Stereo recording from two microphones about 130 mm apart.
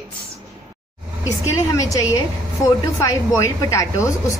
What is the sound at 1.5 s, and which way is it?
Speech, 25° left (ahead or behind).